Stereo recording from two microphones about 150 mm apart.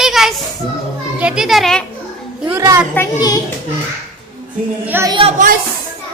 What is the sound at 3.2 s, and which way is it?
Speech, 25° left (ahead or behind).